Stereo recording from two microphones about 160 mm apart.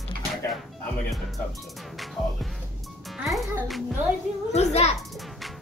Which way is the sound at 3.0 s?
Centre (ahead or behind).